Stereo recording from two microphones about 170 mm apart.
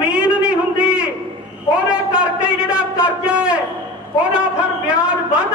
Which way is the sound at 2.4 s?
5° right (ahead or behind).